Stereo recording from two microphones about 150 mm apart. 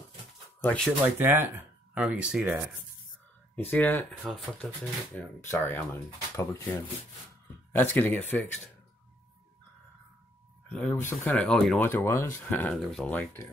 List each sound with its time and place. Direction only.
0.6 s speech: 5° left (ahead or behind)
1.0 s speech: 15° right (ahead or behind)
3.7 s speech: 10° left (ahead or behind)
4.2 s speech: centre (ahead or behind)
5.5 s speech: 15° left (ahead or behind)
10.7 s speech: 10° left (ahead or behind)
11.9 s speech: 15° left (ahead or behind)